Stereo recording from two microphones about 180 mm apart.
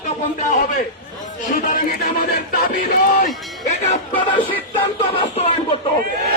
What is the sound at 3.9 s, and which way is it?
Music, 30° left (ahead or behind).